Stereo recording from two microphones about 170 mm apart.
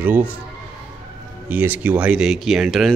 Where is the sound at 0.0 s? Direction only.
10° right (ahead or behind).